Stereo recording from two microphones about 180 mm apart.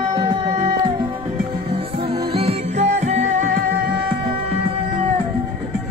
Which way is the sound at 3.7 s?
70° right (ahead or behind).